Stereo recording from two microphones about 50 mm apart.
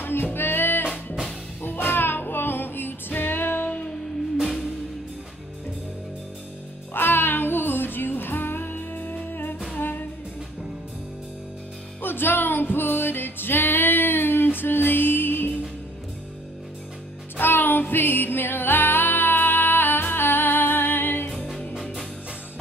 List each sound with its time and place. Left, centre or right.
0.0 s music: left
6.9 s music: left
12.0 s music: left
17.4 s music: left